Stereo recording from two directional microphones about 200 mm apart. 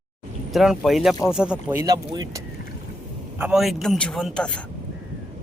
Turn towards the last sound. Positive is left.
turn(degrees=5)  # may be behind; listen again after turning